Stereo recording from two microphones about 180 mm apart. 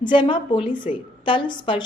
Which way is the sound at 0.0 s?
25° left (ahead or behind).